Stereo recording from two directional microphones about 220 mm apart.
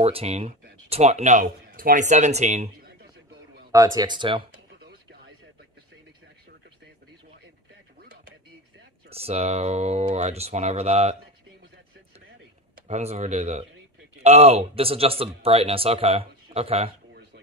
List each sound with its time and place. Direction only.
0.0 s speech: 30° right (ahead or behind)
3.7 s speech: 15° right (ahead or behind)
9.1 s speech: 30° right (ahead or behind)
12.8 s speech: 30° right (ahead or behind)